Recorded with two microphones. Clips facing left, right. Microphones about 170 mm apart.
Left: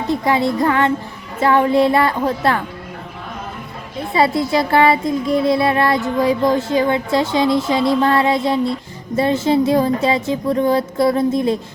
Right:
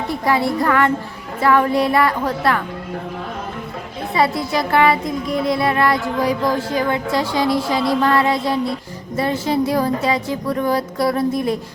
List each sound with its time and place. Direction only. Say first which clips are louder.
0.1 s music: left 2 dB; 20° left (ahead or behind)
1.4 s child singing: left 2 dB; 25° left (ahead or behind)
4.1 s child singing: left 3 dB; 25° left (ahead or behind)